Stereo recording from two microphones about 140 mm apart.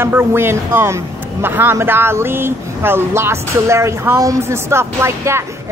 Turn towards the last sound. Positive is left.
turn(degrees=-20)  # may be behind; listen again after turning